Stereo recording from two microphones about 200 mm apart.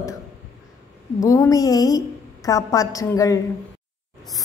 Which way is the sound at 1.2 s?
15° left (ahead or behind).